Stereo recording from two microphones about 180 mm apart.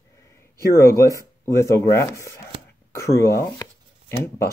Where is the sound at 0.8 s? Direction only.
15° left (ahead or behind).